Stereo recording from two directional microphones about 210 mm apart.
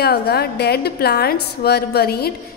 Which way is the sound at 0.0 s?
50° left (ahead or behind).